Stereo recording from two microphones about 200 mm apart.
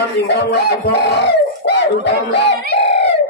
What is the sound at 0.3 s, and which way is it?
Speech, 55° left (ahead or behind).